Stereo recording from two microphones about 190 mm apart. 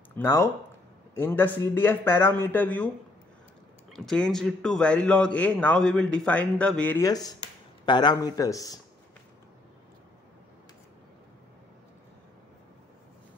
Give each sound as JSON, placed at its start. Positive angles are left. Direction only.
{"t": 0.1, "sound": "speech", "side_deg": 15}
{"t": 3.9, "sound": "a man's voice", "side_deg": 5}
{"t": 7.1, "sound": "a man's voice", "side_deg": 20}